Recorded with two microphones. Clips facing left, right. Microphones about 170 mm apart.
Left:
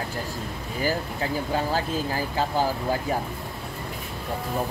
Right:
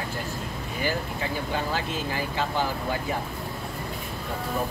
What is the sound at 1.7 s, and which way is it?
Speech, 40° left (ahead or behind).